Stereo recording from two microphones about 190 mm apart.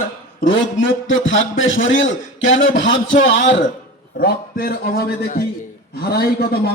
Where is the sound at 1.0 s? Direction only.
90° left.